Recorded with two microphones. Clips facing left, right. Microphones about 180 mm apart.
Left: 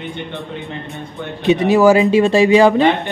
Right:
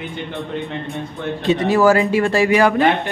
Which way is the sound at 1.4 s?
20° left (ahead or behind).